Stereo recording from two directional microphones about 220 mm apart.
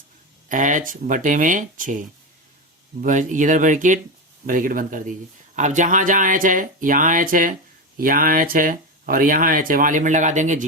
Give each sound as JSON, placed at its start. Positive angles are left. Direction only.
{"t": 0.4, "sound": "speech", "side_deg": -35}